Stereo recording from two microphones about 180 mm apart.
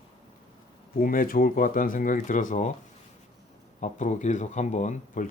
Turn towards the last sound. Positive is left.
turn(degrees=45)  # may be behind; listen again after turning